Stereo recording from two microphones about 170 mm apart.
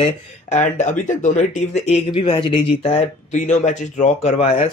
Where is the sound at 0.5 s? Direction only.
45° left (ahead or behind).